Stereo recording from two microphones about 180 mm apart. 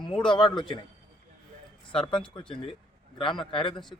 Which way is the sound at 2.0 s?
25° left (ahead or behind).